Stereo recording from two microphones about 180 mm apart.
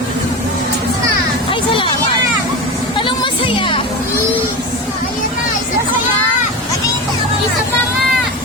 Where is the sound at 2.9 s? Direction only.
30° left (ahead or behind).